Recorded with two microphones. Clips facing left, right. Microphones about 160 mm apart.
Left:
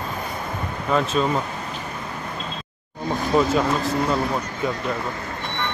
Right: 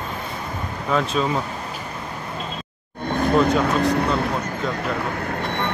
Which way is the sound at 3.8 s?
65° right (ahead or behind).